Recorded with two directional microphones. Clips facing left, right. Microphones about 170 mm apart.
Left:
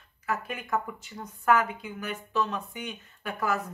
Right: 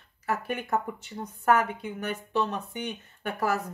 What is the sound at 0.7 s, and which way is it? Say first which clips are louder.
Speech: left 1 dB; 35° right (ahead or behind).